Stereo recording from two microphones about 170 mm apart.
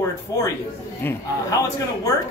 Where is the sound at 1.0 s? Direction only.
15° left (ahead or behind).